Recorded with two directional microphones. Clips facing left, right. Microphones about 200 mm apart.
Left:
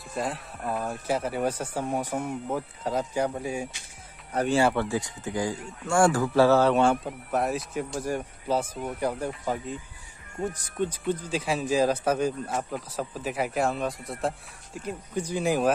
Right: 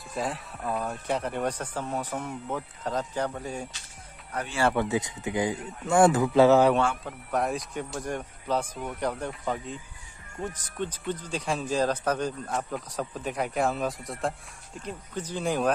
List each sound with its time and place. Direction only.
0.1 s speech: centre (ahead or behind)
4.7 s speech: 20° right (ahead or behind)
7.1 s speech: 5° left (ahead or behind)